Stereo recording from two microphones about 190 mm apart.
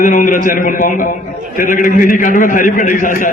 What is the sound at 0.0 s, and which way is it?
A man's voice, 45° left (ahead or behind).